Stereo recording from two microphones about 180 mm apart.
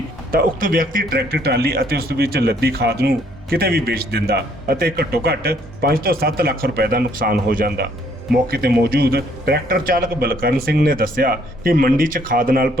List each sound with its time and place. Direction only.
0.3 s speech: 55° right (ahead or behind)